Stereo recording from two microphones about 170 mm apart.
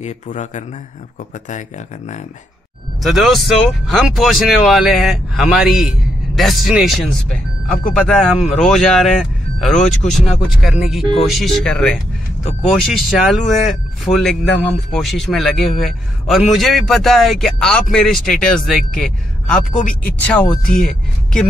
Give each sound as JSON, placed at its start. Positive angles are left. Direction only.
{"t": 0.0, "sound": "speech", "side_deg": 45}
{"t": 3.0, "sound": "speech", "side_deg": 0}